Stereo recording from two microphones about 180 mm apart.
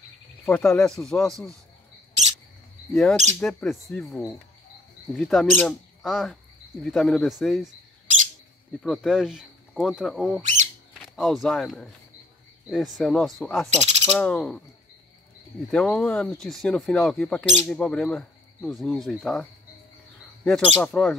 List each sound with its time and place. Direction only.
0.5 s speech: 5° left (ahead or behind)
2.9 s speech: centre (ahead or behind)
5.1 s speech: centre (ahead or behind)
8.8 s speech: centre (ahead or behind)
13.7 s owl: 40° right (ahead or behind)
14.2 s speech: 5° left (ahead or behind)
15.7 s speech: 5° left (ahead or behind)
20.4 s speech: 5° left (ahead or behind)